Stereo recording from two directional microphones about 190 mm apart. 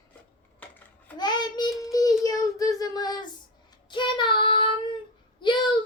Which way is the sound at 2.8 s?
20° left (ahead or behind).